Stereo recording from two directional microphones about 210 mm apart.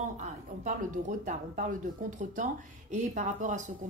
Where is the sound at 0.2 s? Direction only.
35° right (ahead or behind).